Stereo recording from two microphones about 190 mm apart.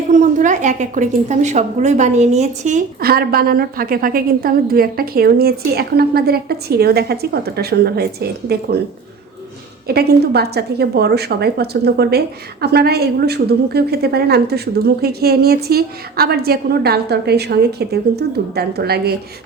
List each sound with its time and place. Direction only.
0.1 s a woman's voice: 40° right (ahead or behind)
9.8 s a woman's voice: 55° right (ahead or behind)